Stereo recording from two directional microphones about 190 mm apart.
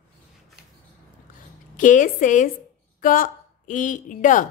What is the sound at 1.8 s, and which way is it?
A woman's voice, 40° left (ahead or behind).